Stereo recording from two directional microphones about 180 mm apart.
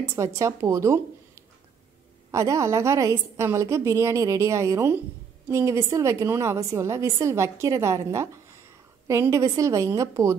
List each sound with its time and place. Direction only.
0.0 s a woman's voice: 15° right (ahead or behind)
2.3 s a woman's voice: 15° right (ahead or behind)